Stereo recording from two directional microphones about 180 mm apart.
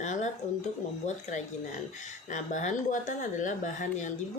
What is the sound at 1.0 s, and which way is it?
A woman's voice, 40° left (ahead or behind).